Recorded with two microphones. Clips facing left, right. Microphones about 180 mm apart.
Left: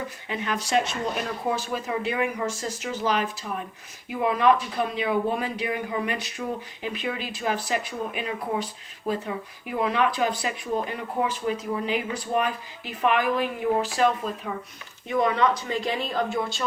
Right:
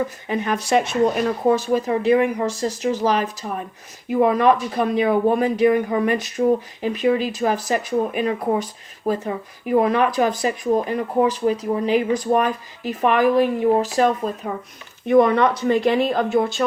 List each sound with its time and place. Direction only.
0.3 s speech: 50° right (ahead or behind)
15.0 s speech: 55° right (ahead or behind)